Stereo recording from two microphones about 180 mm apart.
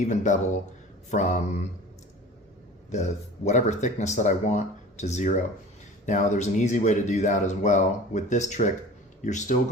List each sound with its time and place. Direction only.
0.0 s speech: 45° left (ahead or behind)
2.9 s speech: 40° left (ahead or behind)